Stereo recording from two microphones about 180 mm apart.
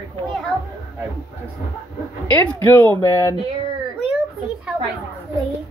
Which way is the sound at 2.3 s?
10° left (ahead or behind).